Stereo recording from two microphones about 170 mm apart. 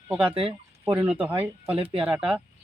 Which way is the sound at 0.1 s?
5° right (ahead or behind).